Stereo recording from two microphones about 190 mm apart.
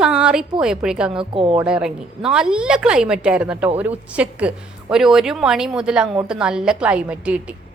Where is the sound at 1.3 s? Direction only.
30° right (ahead or behind).